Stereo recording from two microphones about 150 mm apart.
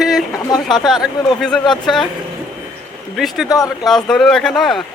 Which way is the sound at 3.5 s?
25° left (ahead or behind).